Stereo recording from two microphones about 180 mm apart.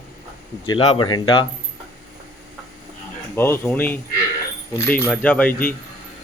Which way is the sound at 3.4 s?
10° left (ahead or behind).